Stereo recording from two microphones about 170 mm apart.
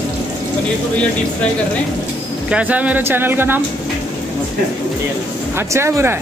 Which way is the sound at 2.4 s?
10° right (ahead or behind).